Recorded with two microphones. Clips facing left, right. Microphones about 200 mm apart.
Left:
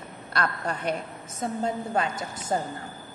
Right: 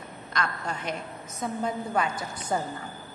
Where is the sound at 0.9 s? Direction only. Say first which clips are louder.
Left 4 dB; 30° left (ahead or behind).